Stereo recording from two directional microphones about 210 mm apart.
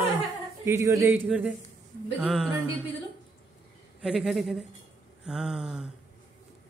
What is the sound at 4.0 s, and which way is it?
A man's voice, centre (ahead or behind).